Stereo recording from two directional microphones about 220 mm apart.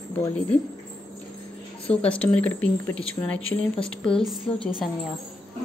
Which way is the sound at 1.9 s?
5° left (ahead or behind).